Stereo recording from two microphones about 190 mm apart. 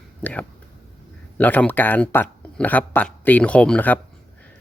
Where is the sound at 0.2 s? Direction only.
10° left (ahead or behind).